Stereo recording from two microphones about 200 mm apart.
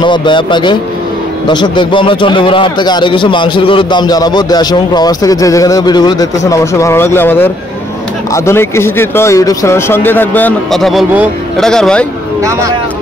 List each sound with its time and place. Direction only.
0.0 s speech: 25° left (ahead or behind); by 12.1 s 5° left (ahead or behind)